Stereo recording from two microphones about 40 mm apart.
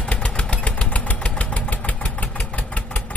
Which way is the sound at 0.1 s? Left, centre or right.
Left.